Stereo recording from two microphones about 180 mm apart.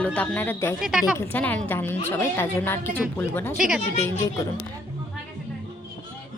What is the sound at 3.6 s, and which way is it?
Speech, 5° right (ahead or behind).